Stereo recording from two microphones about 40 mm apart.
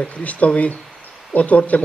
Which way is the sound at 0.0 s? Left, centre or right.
Left.